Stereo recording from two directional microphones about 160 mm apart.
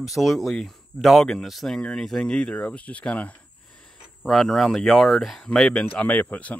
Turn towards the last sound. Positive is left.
turn(degrees=10)  # may be behind; listen again after turning